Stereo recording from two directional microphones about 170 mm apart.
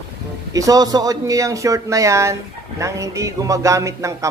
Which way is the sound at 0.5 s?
20° right (ahead or behind).